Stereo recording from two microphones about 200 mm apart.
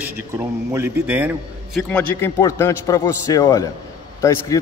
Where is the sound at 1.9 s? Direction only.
10° left (ahead or behind).